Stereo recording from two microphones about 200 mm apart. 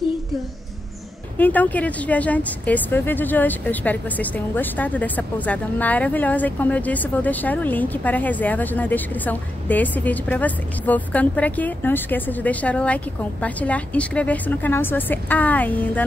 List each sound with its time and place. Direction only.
1.4 s a woman's voice: 10° left (ahead or behind)